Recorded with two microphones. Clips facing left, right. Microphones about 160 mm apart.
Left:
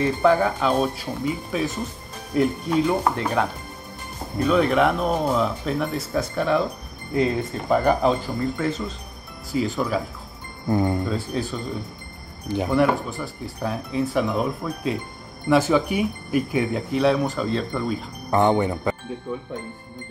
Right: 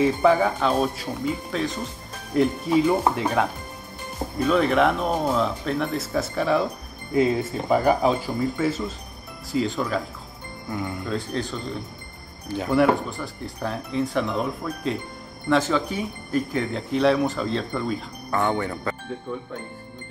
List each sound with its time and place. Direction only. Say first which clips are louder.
0.0 s speech: even; centre (ahead or behind)
10.7 s speech: left 9 dB; 35° left (ahead or behind)
11.1 s speech: left 1 dB; 5° left (ahead or behind)
12.7 s speech: right 2 dB; centre (ahead or behind)
18.3 s speech: left 5 dB; 20° left (ahead or behind)